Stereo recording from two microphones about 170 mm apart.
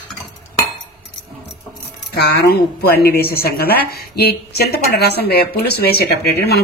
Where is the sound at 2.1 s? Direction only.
70° left (ahead or behind).